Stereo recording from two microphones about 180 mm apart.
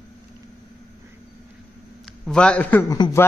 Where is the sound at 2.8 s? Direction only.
20° left (ahead or behind).